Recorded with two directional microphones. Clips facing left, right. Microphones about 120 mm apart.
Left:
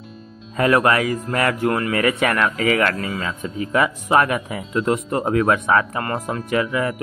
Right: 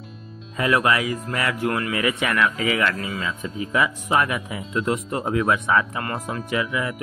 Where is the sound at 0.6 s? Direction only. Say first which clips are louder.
Left 4 dB; 45° left (ahead or behind).